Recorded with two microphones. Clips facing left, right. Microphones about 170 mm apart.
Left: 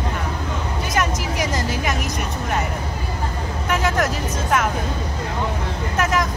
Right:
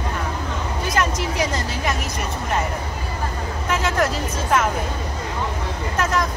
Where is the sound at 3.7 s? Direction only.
Centre (ahead or behind).